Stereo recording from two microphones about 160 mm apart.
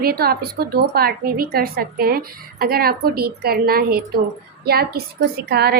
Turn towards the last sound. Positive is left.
turn(degrees=-80)